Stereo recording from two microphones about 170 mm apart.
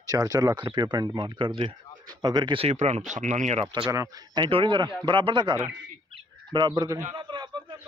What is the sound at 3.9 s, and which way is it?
Speech, 20° right (ahead or behind).